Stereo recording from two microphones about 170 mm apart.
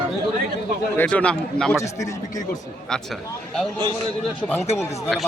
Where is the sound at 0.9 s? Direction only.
5° left (ahead or behind).